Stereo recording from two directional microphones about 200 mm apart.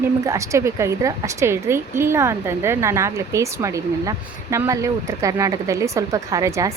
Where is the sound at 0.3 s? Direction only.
15° right (ahead or behind).